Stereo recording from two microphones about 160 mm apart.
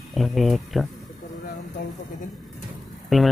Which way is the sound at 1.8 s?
65° left (ahead or behind).